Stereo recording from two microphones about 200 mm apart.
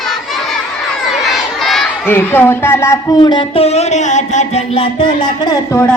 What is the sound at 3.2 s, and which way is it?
Music, 25° left (ahead or behind).